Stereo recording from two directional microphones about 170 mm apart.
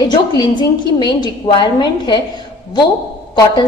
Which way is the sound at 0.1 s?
25° left (ahead or behind).